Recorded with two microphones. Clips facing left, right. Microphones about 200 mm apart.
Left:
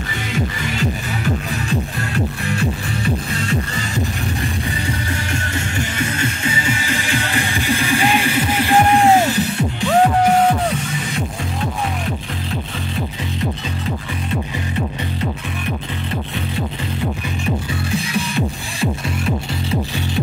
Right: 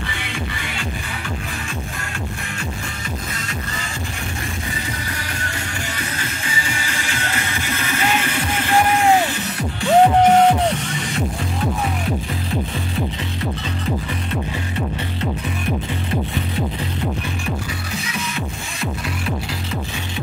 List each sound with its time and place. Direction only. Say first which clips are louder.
0.3 s music: left 9 dB; 40° left (ahead or behind)
5.9 s music: left 6 dB; 20° left (ahead or behind)
9.8 s music: right 2 dB; 20° right (ahead or behind)